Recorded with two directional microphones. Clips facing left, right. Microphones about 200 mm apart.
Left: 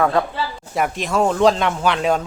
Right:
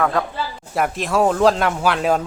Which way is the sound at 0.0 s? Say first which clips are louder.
Left 2 dB; 15° left (ahead or behind).